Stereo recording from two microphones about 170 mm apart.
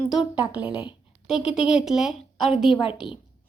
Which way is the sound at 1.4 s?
40° left (ahead or behind).